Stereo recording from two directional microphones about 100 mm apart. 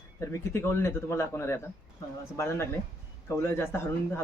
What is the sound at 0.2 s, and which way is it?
Speech, 25° left (ahead or behind).